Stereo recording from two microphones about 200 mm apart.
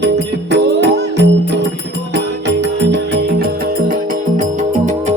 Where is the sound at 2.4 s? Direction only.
60° right (ahead or behind).